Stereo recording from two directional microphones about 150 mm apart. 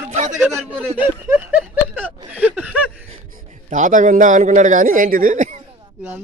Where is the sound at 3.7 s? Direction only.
60° right (ahead or behind).